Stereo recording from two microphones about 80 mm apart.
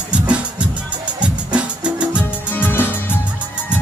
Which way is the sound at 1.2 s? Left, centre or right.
Centre.